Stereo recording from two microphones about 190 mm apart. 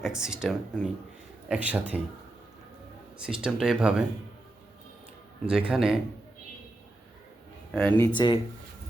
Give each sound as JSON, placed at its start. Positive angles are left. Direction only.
{"t": 0.0, "sound": "speech", "side_deg": -5}
{"t": 3.2, "sound": "speech", "side_deg": -5}
{"t": 5.5, "sound": "speech", "side_deg": -5}
{"t": 7.7, "sound": "speech", "side_deg": 5}
{"t": 8.0, "sound": "speech", "side_deg": 25}